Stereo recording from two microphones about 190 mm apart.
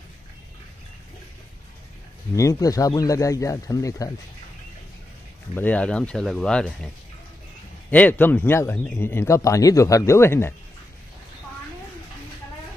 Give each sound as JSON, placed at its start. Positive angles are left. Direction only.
{"t": 2.3, "sound": "speech", "side_deg": 15}
{"t": 5.5, "sound": "speech", "side_deg": 10}
{"t": 7.9, "sound": "speech", "side_deg": 10}